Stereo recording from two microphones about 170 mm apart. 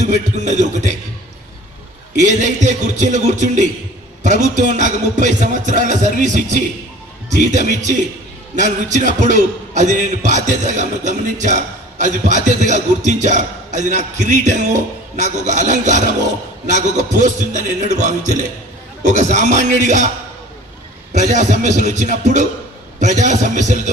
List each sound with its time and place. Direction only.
0.0 s a man's voice: 45° right (ahead or behind)
2.2 s a man's voice: 45° right (ahead or behind)
21.1 s a man's voice: 45° right (ahead or behind)